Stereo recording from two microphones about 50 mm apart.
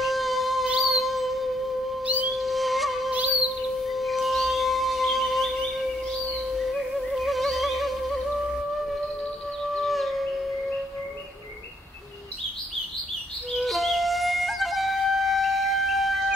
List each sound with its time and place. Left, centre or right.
0.0 s music: centre
2.2 s a sound: centre
3.1 s music: right
3.8 s music: centre
7.2 s music: centre
9.7 s a sound: centre
13.5 s flute: centre